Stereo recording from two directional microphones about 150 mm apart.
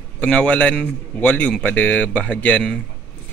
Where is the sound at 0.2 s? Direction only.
10° left (ahead or behind).